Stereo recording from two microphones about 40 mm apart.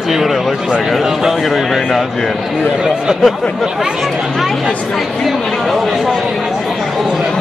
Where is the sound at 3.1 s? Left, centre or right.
Centre.